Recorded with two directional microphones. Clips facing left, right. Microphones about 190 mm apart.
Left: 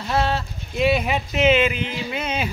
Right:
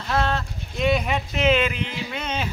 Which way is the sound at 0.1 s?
5° left (ahead or behind).